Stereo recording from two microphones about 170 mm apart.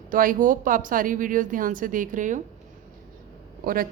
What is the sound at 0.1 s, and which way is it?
A woman's voice, 55° right (ahead or behind).